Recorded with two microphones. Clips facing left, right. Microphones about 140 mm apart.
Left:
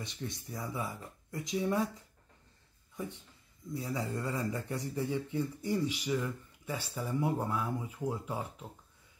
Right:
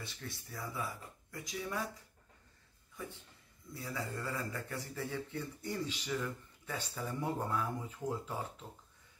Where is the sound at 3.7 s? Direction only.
20° left (ahead or behind).